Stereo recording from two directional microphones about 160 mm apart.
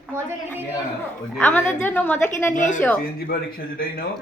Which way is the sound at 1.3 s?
10° left (ahead or behind).